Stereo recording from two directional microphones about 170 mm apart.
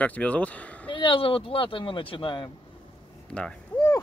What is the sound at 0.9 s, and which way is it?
Speech, 30° left (ahead or behind).